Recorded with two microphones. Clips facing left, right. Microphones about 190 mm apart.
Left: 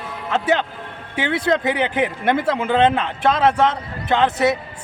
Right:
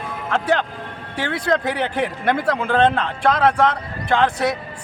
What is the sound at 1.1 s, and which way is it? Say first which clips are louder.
Speech: left 2 dB; 20° left (ahead or behind).